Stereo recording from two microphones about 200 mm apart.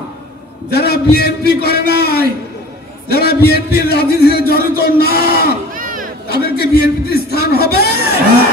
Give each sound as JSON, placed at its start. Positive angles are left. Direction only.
{"t": 0.7, "sound": "speech", "side_deg": 55}
{"t": 5.8, "sound": "a sound", "side_deg": -45}
{"t": 6.2, "sound": "speech", "side_deg": 50}